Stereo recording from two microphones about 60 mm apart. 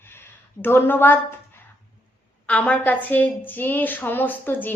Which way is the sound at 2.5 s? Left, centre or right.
Left.